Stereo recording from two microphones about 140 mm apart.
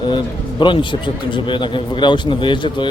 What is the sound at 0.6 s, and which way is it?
Speech, 35° left (ahead or behind).